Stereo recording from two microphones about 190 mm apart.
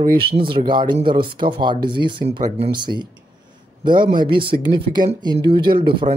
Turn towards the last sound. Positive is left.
turn(degrees=-25)  # may be behind; listen again after turning